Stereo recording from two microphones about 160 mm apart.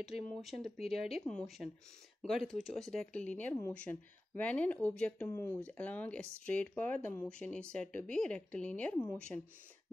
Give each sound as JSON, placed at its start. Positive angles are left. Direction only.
{"t": 0.0, "sound": "speech", "side_deg": 0}
{"t": 9.3, "sound": "speech", "side_deg": 20}